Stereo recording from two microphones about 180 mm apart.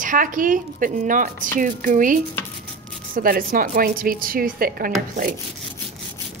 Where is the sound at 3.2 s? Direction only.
55° right (ahead or behind).